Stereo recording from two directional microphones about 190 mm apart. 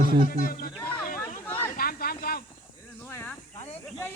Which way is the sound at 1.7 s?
50° left (ahead or behind).